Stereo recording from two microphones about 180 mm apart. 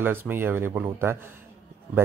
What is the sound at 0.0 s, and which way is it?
Speech, 10° right (ahead or behind).